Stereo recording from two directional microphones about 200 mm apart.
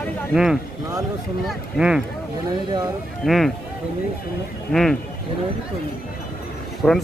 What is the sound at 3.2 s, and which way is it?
Speech, centre (ahead or behind).